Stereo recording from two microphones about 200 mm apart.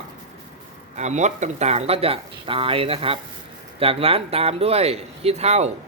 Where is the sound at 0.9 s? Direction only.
35° right (ahead or behind).